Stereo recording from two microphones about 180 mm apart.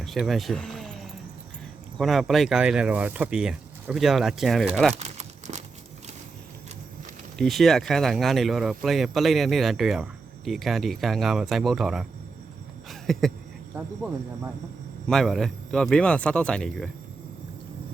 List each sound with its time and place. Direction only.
0.0 s a sound: centre (ahead or behind)
2.0 s speech: centre (ahead or behind)
5.0 s crumpling: 40° right (ahead or behind)
7.3 s speech: centre (ahead or behind)
12.9 s a sound: centre (ahead or behind)
13.7 s speech: 10° right (ahead or behind)
15.0 s speech: centre (ahead or behind)